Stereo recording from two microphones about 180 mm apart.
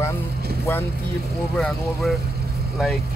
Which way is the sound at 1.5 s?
Centre (ahead or behind).